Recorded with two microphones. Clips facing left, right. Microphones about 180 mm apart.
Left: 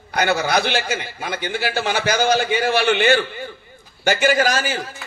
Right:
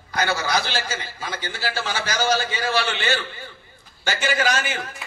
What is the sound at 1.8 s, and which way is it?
A man's voice, 60° left (ahead or behind).